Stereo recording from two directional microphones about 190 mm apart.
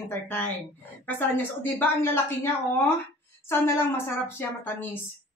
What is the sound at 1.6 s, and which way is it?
Speech, 10° left (ahead or behind).